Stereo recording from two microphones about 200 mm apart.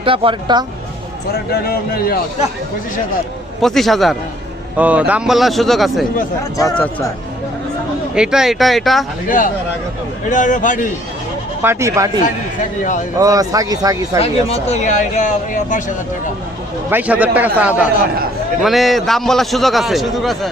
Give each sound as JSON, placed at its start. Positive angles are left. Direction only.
{"t": 0.0, "sound": "speech", "side_deg": -25}
{"t": 1.6, "sound": "speech", "side_deg": 50}
{"t": 3.6, "sound": "a man's voice", "side_deg": 0}
{"t": 6.6, "sound": "speech", "side_deg": 10}
{"t": 8.1, "sound": "a man's voice", "side_deg": -5}
{"t": 10.2, "sound": "speech", "side_deg": 40}
{"t": 11.6, "sound": "speech", "side_deg": -15}
{"t": 13.1, "sound": "speech", "side_deg": -15}
{"t": 14.2, "sound": "speech", "side_deg": 30}
{"t": 16.9, "sound": "a man's voice", "side_deg": -5}